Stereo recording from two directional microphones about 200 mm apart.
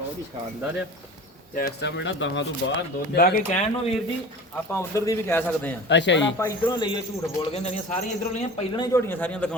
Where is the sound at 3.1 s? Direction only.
45° left (ahead or behind).